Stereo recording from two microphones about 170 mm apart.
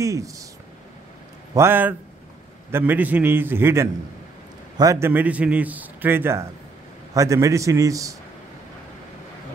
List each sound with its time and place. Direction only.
0.0 s a man's voice: 20° right (ahead or behind)
1.5 s a man's voice: 15° right (ahead or behind)